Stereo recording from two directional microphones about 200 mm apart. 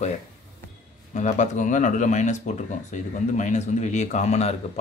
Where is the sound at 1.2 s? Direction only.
35° left (ahead or behind).